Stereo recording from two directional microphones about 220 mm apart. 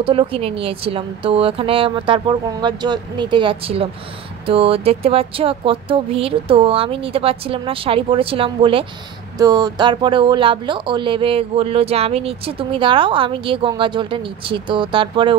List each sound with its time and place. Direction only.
0.0 s speech: 25° right (ahead or behind)